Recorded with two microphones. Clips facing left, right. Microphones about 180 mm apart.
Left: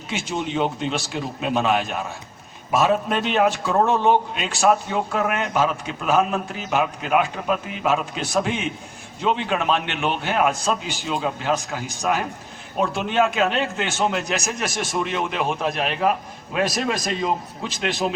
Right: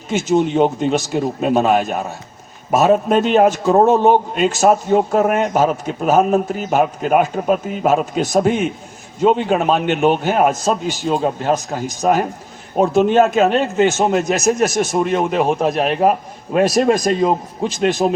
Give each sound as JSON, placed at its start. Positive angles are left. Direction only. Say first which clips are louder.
{"t": 0.1, "sound": "a man's voice", "louder": "right 10 dB", "side_deg": -45}